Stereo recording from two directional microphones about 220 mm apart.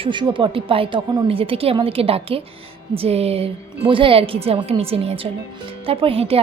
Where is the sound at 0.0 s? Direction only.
20° right (ahead or behind).